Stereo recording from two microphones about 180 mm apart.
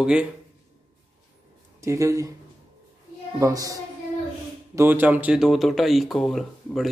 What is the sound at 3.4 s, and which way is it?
A woman's voice, 20° right (ahead or behind).